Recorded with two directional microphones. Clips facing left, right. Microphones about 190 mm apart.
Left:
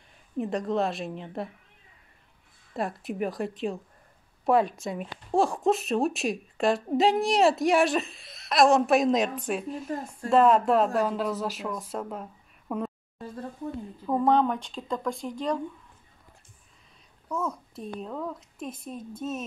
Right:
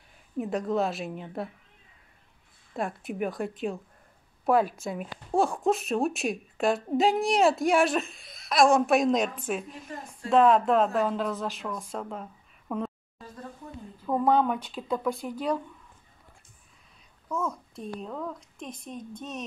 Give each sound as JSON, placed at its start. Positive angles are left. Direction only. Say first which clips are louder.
{"t": 0.4, "sound": "a woman's voice", "louder": "even", "side_deg": 0}
{"t": 2.7, "sound": "a woman's voice", "louder": "left 1 dB", "side_deg": 0}
{"t": 9.7, "sound": "a woman's voice", "louder": "left 8 dB", "side_deg": 45}
{"t": 10.3, "sound": "a woman's voice", "louder": "even", "side_deg": 0}
{"t": 13.2, "sound": "a sound", "louder": "left 6 dB", "side_deg": 30}
{"t": 14.0, "sound": "a woman's voice", "louder": "left 1 dB", "side_deg": 0}
{"t": 17.3, "sound": "a woman's voice", "louder": "even", "side_deg": 0}